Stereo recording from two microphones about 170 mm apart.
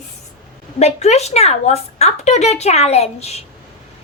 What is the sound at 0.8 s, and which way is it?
A woman's voice, 40° left (ahead or behind).